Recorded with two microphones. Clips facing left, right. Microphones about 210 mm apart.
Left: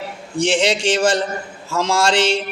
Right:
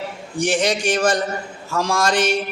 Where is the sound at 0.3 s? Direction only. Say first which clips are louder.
Left 2 dB; 25° left (ahead or behind).